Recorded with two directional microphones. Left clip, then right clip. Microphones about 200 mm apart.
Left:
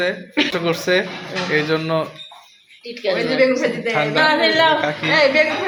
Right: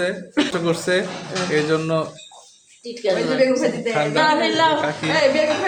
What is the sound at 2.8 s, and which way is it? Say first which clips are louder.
Speech: even; 20° right (ahead or behind).